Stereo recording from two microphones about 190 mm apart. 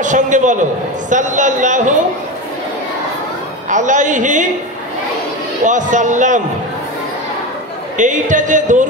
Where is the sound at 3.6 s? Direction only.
40° right (ahead or behind).